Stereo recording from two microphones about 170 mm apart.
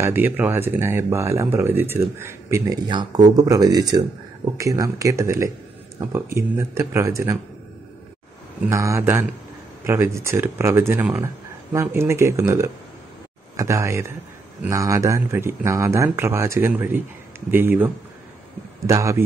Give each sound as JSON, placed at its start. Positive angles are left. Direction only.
{"t": 0.0, "sound": "speech", "side_deg": -10}
{"t": 8.6, "sound": "speech", "side_deg": -15}